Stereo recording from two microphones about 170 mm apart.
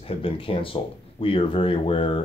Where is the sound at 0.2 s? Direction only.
35° left (ahead or behind).